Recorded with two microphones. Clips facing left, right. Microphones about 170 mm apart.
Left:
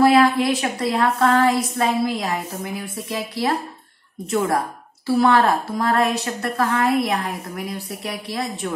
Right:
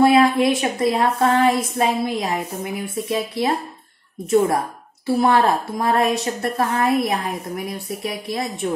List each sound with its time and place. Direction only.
0.0 s a woman's voice: 25° right (ahead or behind)
5.0 s a woman's voice: 20° right (ahead or behind)